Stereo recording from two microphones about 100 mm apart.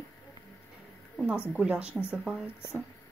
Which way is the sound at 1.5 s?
10° right (ahead or behind).